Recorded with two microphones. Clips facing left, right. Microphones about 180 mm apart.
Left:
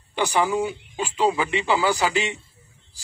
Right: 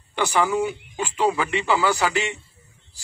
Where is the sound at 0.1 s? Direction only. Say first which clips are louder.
Even; 15° left (ahead or behind).